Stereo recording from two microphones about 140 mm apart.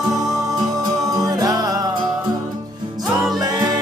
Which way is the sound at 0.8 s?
25° right (ahead or behind).